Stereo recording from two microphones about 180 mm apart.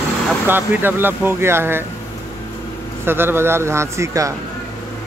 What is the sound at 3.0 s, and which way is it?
Speech, 10° right (ahead or behind).